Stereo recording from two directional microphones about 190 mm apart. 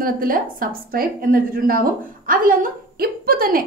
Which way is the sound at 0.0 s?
50° right (ahead or behind).